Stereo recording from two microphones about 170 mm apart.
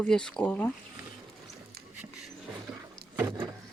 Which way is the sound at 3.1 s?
15° right (ahead or behind).